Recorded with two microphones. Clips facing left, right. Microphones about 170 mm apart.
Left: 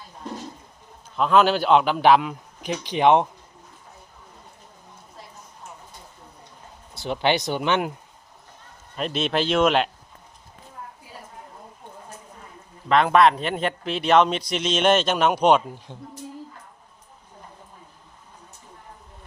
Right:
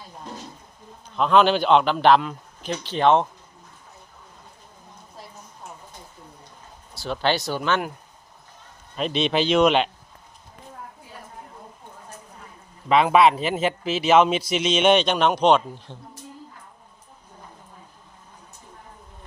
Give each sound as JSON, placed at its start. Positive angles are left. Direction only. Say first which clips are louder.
{"t": 1.1, "sound": "a man's voice", "louder": "right 1 dB", "side_deg": 5}
{"t": 6.9, "sound": "speech", "louder": "left 1 dB", "side_deg": 20}
{"t": 9.0, "sound": "a man's voice", "louder": "right 2 dB", "side_deg": 0}
{"t": 12.9, "sound": "a man's voice", "louder": "even", "side_deg": -5}